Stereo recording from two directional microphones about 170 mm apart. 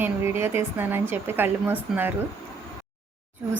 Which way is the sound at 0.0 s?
15° right (ahead or behind).